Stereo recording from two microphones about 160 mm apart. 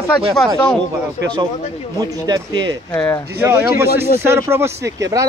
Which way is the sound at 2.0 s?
25° right (ahead or behind).